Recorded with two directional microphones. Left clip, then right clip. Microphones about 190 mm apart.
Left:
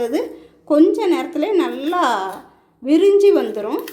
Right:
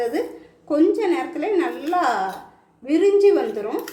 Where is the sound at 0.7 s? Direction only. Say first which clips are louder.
Left 4 dB; 40° left (ahead or behind).